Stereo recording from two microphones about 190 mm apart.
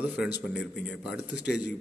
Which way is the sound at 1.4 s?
60° left (ahead or behind).